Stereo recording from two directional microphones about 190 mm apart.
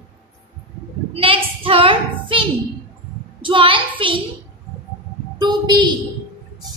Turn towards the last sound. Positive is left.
turn(degrees=-25)  # may be behind; listen again after turning